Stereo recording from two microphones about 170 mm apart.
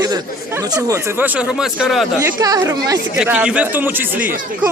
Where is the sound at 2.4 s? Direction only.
20° right (ahead or behind).